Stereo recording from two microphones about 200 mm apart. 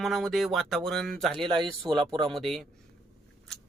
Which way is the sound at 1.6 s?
20° right (ahead or behind).